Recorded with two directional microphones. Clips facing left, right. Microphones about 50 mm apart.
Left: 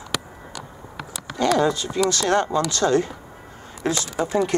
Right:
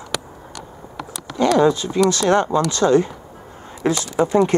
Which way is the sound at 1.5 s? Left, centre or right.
Right.